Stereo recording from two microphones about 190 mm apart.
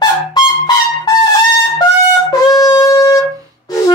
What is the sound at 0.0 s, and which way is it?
Music, 20° left (ahead or behind).